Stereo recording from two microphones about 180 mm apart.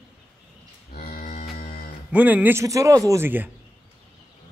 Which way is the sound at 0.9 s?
50° left (ahead or behind).